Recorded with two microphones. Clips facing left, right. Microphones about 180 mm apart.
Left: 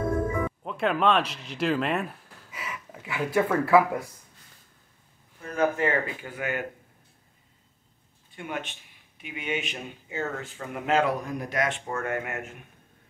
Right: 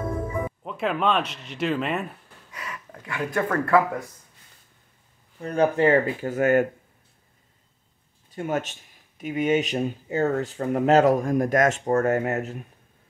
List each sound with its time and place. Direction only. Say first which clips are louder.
0.7 s speech: even; centre (ahead or behind)
5.4 s speech: right 5 dB; 35° right (ahead or behind)
8.3 s speech: right 8 dB; 40° right (ahead or behind)